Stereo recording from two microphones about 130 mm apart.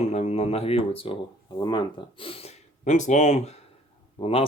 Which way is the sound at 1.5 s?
35° left (ahead or behind).